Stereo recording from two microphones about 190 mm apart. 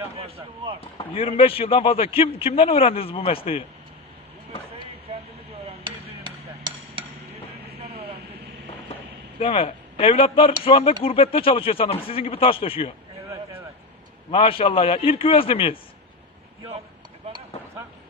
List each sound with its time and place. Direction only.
0.7 s a man's voice: 30° left (ahead or behind)
5.7 s hammer: 25° right (ahead or behind)
9.4 s a man's voice: 30° left (ahead or behind)
14.3 s a man's voice: 30° left (ahead or behind)